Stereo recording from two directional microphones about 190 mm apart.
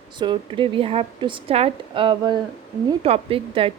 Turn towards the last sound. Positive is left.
turn(degrees=-30)  # may be behind; listen again after turning